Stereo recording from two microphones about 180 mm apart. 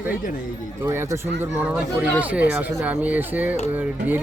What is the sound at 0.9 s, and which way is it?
Speech, 15° right (ahead or behind).